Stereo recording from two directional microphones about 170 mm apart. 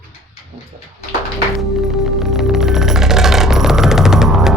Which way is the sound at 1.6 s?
Centre (ahead or behind).